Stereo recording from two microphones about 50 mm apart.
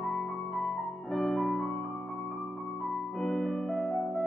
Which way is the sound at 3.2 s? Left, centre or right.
Centre.